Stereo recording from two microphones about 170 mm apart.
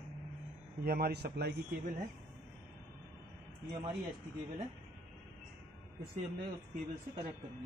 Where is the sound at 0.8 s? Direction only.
65° right (ahead or behind).